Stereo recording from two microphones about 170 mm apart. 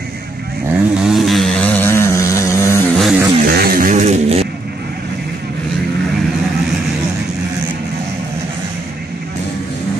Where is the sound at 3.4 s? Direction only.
60° right (ahead or behind); by 4.4 s 40° right (ahead or behind).